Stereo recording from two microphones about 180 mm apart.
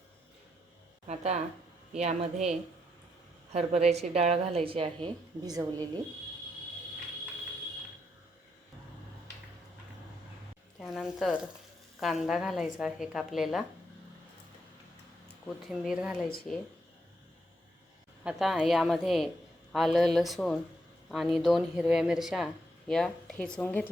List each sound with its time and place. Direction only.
1.0 s a woman's voice: 40° right (ahead or behind); by 6.0 s 20° right (ahead or behind)
10.8 s speech: centre (ahead or behind)
15.6 s speech: centre (ahead or behind)
18.2 s speech: 5° right (ahead or behind)